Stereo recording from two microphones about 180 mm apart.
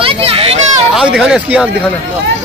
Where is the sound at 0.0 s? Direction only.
35° right (ahead or behind).